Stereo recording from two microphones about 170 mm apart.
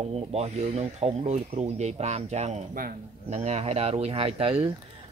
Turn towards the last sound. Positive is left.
turn(degrees=-35)  # may be behind; listen again after turning